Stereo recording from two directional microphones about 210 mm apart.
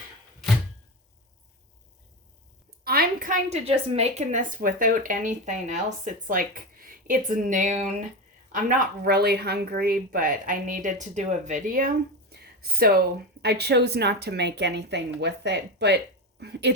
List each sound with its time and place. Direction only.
2.8 s a woman's voice: 45° right (ahead or behind)